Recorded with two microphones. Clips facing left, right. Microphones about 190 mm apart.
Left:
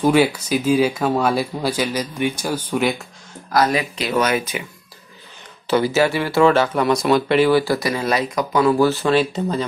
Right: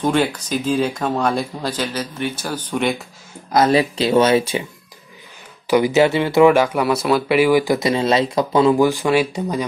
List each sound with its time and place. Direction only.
0.0 s speech: 10° left (ahead or behind)
3.5 s speech: 30° right (ahead or behind)
5.7 s speech: 15° right (ahead or behind)